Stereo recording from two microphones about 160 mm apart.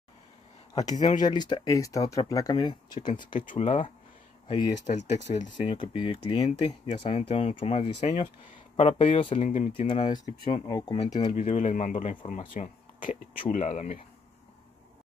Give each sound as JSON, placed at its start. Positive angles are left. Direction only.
{"t": 0.7, "sound": "speech", "side_deg": 25}
{"t": 3.3, "sound": "speech", "side_deg": 50}
{"t": 5.7, "sound": "speech", "side_deg": 35}
{"t": 9.4, "sound": "speech", "side_deg": 50}
{"t": 10.0, "sound": "speech", "side_deg": 25}